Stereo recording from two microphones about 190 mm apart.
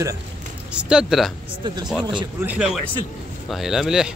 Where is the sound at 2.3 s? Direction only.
5° right (ahead or behind).